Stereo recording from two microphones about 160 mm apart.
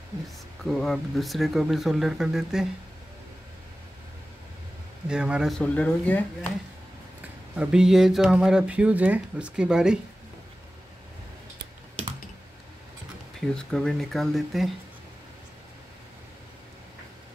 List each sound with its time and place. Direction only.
0.7 s speech: centre (ahead or behind)
5.0 s speech: 5° right (ahead or behind)
5.6 s speech: 10° left (ahead or behind)
7.5 s speech: 5° right (ahead or behind)
13.6 s speech: 5° left (ahead or behind)